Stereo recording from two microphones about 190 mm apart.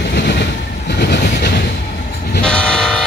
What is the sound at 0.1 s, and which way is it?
Train, 65° left (ahead or behind).